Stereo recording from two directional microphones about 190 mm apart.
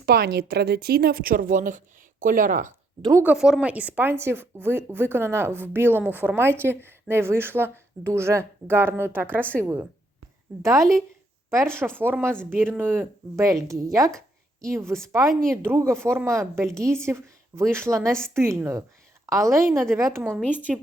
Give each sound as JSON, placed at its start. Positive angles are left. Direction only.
{"t": 0.0, "sound": "speech", "side_deg": -55}
{"t": 3.0, "sound": "speech", "side_deg": -20}
{"t": 3.2, "sound": "a woman's voice", "side_deg": 0}
{"t": 14.1, "sound": "a sound", "side_deg": 5}
{"t": 14.7, "sound": "a woman's voice", "side_deg": -15}
{"t": 19.7, "sound": "a woman's voice", "side_deg": 0}
{"t": 20.0, "sound": "a woman's voice", "side_deg": -15}
{"t": 20.3, "sound": "speech", "side_deg": 10}